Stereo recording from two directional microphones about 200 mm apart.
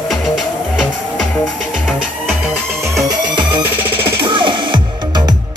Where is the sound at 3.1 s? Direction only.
25° right (ahead or behind).